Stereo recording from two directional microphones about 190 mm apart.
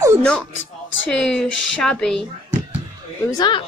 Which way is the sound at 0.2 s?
5° left (ahead or behind).